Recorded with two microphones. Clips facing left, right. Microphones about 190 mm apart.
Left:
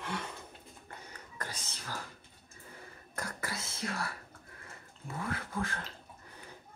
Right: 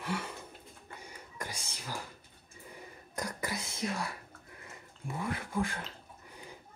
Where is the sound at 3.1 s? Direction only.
15° right (ahead or behind).